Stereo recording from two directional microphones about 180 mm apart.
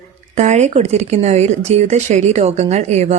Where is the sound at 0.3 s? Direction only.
40° right (ahead or behind).